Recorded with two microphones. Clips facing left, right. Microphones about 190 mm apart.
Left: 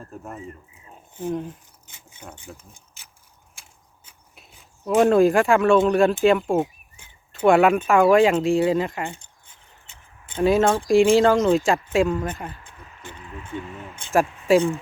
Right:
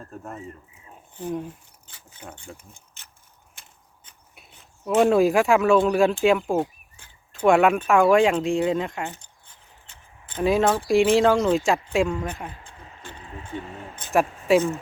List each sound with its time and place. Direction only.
0.1 s speech: 5° left (ahead or behind)
2.2 s speech: 5° right (ahead or behind)
3.5 s a sound: 5° left (ahead or behind)
6.2 s speech: centre (ahead or behind)
10.3 s speech: centre (ahead or behind)
13.1 s vehicle: 30° right (ahead or behind)
14.1 s speech: centre (ahead or behind)